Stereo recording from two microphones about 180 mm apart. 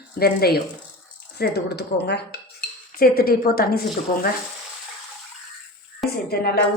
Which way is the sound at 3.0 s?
55° left (ahead or behind).